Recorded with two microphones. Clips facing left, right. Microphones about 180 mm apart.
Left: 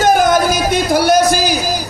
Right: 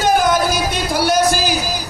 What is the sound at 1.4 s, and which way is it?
Music, 45° left (ahead or behind).